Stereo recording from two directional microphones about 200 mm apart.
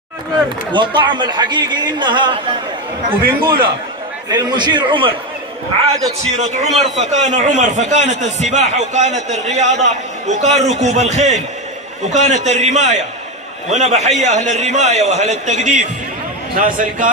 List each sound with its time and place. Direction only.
0.7 s a man's voice: 20° right (ahead or behind)
3.2 s a man's voice: 50° right (ahead or behind)
4.3 s a man's voice: 20° right (ahead or behind)
6.3 s a man's voice: 35° right (ahead or behind)